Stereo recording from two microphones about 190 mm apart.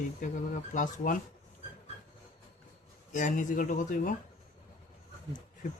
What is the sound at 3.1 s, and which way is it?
Speech, 40° left (ahead or behind).